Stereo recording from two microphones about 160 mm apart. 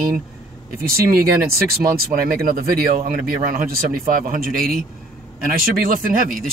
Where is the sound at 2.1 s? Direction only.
65° right (ahead or behind).